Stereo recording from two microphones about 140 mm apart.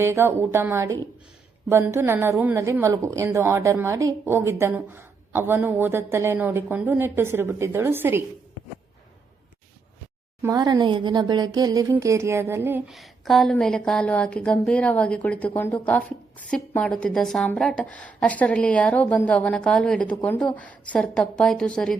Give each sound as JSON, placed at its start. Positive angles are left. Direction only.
{"t": 0.0, "sound": "a woman's voice", "side_deg": -20}
{"t": 10.4, "sound": "speech", "side_deg": -25}
{"t": 12.9, "sound": "a woman's voice", "side_deg": 0}